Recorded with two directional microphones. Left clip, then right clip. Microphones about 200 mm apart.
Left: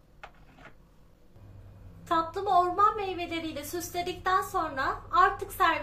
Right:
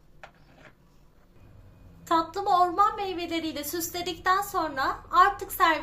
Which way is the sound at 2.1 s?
40° right (ahead or behind).